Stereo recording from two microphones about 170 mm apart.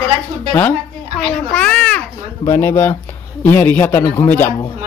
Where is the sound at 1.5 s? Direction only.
5° left (ahead or behind).